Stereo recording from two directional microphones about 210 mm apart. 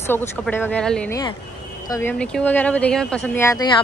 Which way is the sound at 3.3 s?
15° left (ahead or behind).